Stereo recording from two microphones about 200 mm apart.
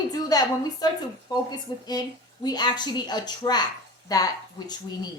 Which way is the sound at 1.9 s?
20° left (ahead or behind).